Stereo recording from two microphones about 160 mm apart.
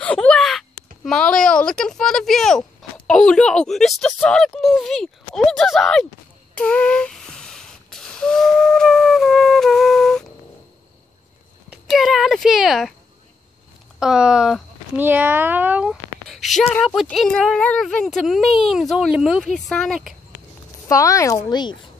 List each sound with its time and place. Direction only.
0.0 s a sound: 5° left (ahead or behind)
3.1 s speech: 5° left (ahead or behind)
6.5 s a sound: 5° left (ahead or behind)
11.7 s speech: centre (ahead or behind)
13.9 s speech: 5° right (ahead or behind)
20.9 s speech: 20° left (ahead or behind)